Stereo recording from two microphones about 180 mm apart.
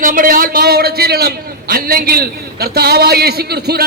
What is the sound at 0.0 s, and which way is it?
A man's voice, 50° right (ahead or behind).